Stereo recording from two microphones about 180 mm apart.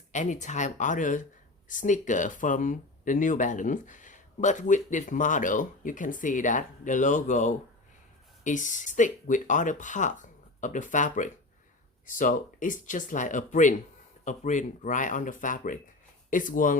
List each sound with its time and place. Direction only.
0.1 s speech: 40° left (ahead or behind)